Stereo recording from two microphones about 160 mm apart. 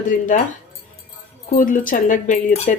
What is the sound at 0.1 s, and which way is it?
Speech, 55° left (ahead or behind).